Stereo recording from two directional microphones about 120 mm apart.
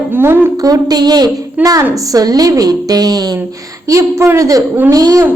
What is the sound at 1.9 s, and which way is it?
Speech, 30° right (ahead or behind).